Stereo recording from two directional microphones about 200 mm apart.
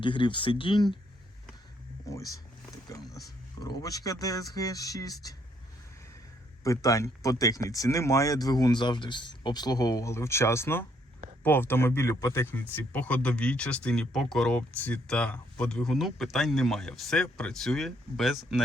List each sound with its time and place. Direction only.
0.0 s speech: 25° left (ahead or behind)
2.0 s speech: 15° left (ahead or behind)
6.7 s speech: 15° left (ahead or behind); by 18.6 s centre (ahead or behind)